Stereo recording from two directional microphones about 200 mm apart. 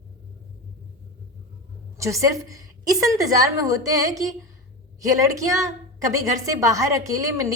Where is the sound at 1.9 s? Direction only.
15° right (ahead or behind).